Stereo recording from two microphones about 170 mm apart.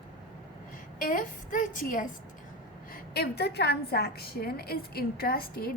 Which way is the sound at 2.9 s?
70° left (ahead or behind).